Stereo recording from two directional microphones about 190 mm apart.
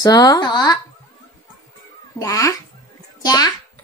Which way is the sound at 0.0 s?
20° left (ahead or behind).